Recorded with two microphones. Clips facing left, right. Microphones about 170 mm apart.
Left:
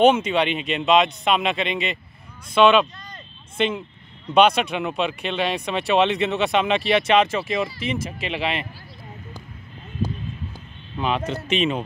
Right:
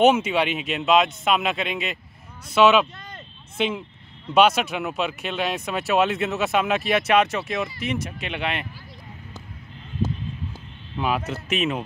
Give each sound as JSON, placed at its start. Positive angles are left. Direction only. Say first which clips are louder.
{"t": 0.0, "sound": "speech", "louder": "left 1 dB", "side_deg": -5}
{"t": 11.0, "sound": "speech", "louder": "left 1 dB", "side_deg": -5}